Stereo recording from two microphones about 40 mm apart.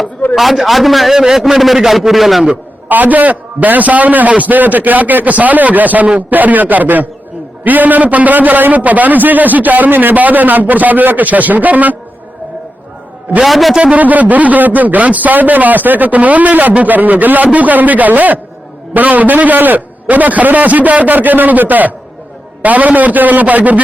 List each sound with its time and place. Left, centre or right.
0.3 s a man's voice: centre
1.1 s a man's voice: centre
2.9 s a man's voice: right
13.4 s a man's voice: centre
13.9 s a man's voice: right